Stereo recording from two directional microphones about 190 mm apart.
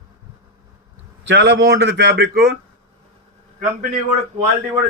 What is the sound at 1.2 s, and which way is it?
Speech, 65° right (ahead or behind).